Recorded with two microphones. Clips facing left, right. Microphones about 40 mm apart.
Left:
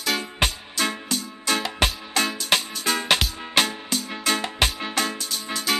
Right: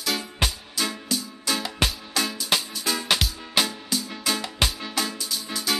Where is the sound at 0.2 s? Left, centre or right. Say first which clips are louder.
Left 3 dB; left.